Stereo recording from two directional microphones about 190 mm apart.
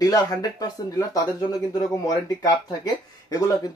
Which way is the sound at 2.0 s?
20° left (ahead or behind).